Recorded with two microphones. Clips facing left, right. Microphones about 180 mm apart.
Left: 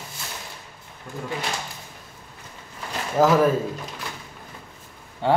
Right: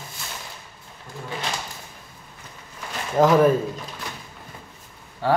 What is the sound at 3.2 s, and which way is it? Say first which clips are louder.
Speech: right 1 dB; 5° left (ahead or behind).